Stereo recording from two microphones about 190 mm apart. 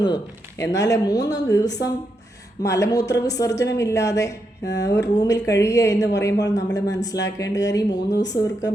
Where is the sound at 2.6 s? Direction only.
15° left (ahead or behind).